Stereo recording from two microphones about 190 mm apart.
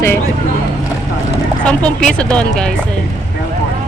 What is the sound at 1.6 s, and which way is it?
Speech, 5° left (ahead or behind).